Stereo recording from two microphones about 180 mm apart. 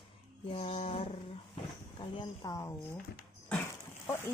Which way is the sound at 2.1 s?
25° left (ahead or behind).